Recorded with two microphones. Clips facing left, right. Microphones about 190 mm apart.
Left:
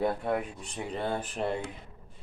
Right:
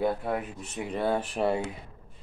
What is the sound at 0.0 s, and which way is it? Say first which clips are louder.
Speech: right 1 dB; 5° right (ahead or behind).